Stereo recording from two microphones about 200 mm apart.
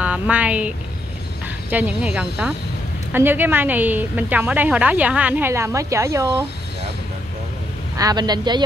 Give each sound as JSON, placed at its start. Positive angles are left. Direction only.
{"t": 0.0, "sound": "a woman's voice", "side_deg": -5}
{"t": 8.0, "sound": "speech", "side_deg": -20}